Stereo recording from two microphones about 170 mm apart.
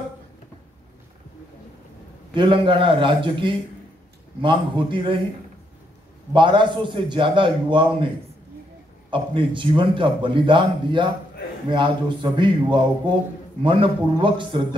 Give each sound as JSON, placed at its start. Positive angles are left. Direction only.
{"t": 2.3, "sound": "a man's voice", "side_deg": -30}
{"t": 6.3, "sound": "a man's voice", "side_deg": -30}
{"t": 9.1, "sound": "a man's voice", "side_deg": -30}